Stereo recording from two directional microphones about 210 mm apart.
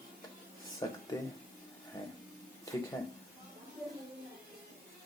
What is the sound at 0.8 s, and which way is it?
Speech, 15° left (ahead or behind).